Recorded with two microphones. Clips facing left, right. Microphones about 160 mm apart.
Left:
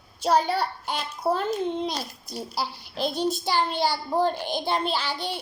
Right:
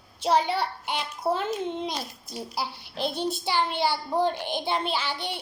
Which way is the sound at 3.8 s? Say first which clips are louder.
Left 1 dB; 40° left (ahead or behind).